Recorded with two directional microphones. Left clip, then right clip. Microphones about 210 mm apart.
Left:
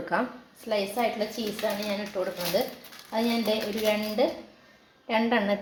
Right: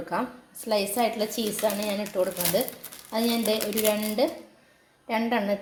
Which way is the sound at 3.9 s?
20° right (ahead or behind).